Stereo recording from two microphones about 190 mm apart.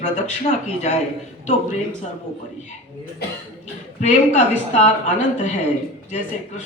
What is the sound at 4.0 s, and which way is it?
Speech, 40° left (ahead or behind).